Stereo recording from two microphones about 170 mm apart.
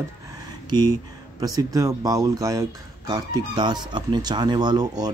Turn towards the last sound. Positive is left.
turn(degrees=-25)  # may be behind; listen again after turning